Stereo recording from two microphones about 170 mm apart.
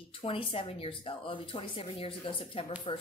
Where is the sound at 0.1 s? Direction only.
30° left (ahead or behind).